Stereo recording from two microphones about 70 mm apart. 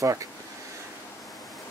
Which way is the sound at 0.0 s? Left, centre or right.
Right.